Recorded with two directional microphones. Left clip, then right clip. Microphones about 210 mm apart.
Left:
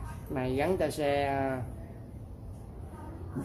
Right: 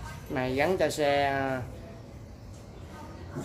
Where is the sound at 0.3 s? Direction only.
20° right (ahead or behind).